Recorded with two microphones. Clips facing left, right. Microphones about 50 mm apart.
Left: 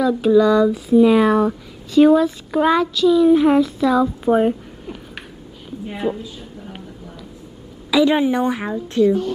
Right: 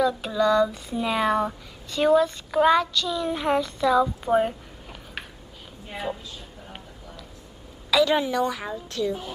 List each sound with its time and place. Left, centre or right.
0.0 s a woman's voice: centre
7.9 s a woman's voice: left